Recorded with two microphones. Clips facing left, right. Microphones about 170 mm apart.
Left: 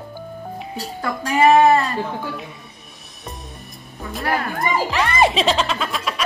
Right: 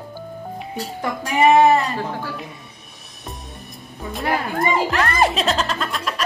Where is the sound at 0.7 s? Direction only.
15° right (ahead or behind).